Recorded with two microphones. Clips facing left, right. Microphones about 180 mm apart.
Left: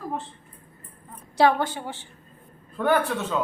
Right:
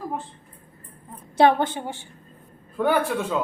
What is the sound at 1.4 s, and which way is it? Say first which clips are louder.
A woman's voice: right 2 dB; 20° right (ahead or behind).